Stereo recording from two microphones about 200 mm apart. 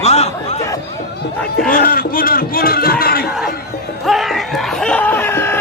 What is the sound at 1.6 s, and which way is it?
A man's voice, 45° left (ahead or behind).